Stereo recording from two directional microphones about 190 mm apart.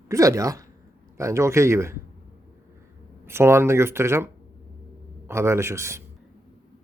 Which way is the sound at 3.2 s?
15° right (ahead or behind).